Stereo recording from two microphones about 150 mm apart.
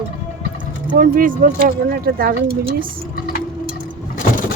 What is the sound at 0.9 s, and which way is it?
Speech, 65° right (ahead or behind).